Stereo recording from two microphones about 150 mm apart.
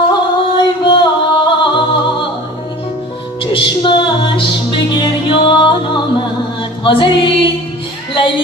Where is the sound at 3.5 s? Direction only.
35° left (ahead or behind).